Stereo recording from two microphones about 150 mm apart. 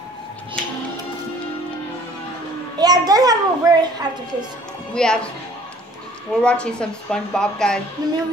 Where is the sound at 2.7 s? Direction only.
25° right (ahead or behind).